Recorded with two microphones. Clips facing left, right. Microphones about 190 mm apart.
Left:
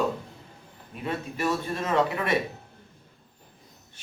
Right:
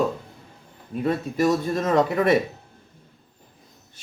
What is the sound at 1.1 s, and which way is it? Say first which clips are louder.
Speech: right 7 dB; 40° right (ahead or behind).